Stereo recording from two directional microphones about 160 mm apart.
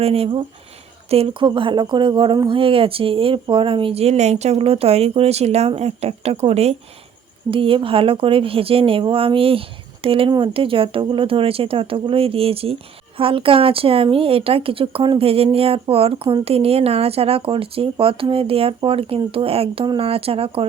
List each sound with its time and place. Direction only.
0.0 s speech: 40° right (ahead or behind)